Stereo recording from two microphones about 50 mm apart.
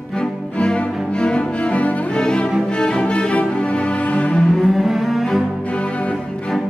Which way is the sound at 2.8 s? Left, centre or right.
Centre.